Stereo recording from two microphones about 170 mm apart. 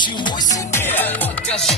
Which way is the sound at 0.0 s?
25° left (ahead or behind).